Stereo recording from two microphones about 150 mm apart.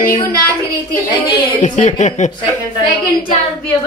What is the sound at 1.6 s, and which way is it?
Speech, 55° left (ahead or behind).